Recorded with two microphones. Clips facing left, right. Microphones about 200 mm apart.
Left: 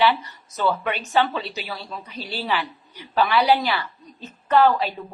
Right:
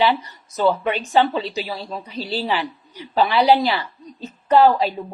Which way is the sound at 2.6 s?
15° right (ahead or behind).